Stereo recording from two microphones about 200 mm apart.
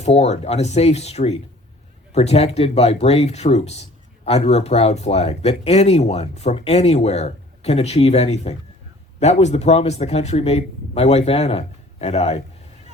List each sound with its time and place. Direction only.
0.0 s speech: 35° left (ahead or behind)